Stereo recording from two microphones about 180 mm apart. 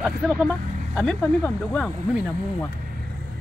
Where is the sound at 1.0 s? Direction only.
5° left (ahead or behind).